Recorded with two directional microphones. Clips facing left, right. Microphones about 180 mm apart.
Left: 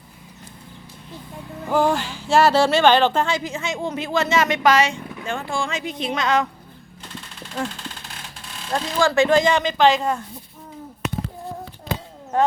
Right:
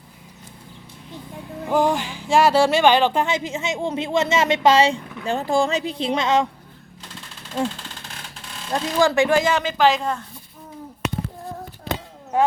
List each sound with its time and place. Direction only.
1.7 s speech: 15° right (ahead or behind)
8.7 s speech: 15° right (ahead or behind)
12.3 s speech: 10° right (ahead or behind)